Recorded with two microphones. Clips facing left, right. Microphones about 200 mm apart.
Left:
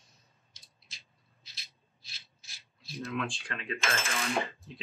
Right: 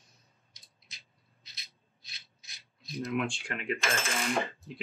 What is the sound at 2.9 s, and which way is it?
Speech, 20° right (ahead or behind).